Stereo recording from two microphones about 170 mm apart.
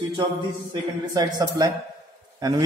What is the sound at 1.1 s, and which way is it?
Speech, 20° right (ahead or behind).